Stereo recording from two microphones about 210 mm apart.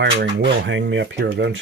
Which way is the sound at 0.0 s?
60° right (ahead or behind).